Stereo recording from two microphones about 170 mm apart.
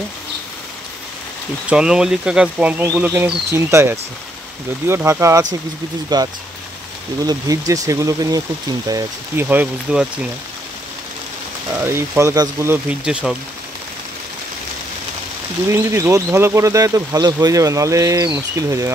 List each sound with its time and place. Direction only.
1.7 s speech: 5° right (ahead or behind)
11.8 s speech: 15° right (ahead or behind)
15.6 s speech: 15° right (ahead or behind)